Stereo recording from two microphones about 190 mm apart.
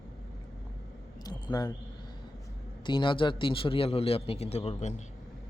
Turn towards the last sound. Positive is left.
turn(degrees=35)  # may be behind; listen again after turning